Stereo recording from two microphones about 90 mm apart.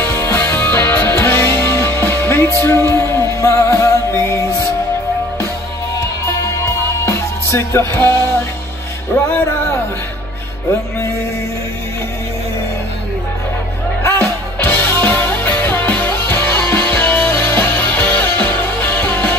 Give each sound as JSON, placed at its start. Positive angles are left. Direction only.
{"t": 0.0, "sound": "music", "side_deg": 30}
{"t": 5.9, "sound": "music", "side_deg": 30}
{"t": 14.0, "sound": "music", "side_deg": 25}